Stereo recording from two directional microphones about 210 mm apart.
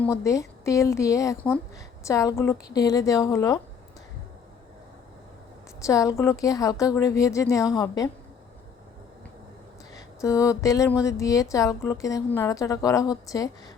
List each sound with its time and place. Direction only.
0.0 s speech: 15° left (ahead or behind)
5.8 s speech: 15° left (ahead or behind)
9.9 s speech: 15° left (ahead or behind)